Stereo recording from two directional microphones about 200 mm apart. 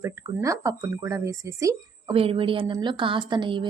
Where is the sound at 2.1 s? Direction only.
25° right (ahead or behind).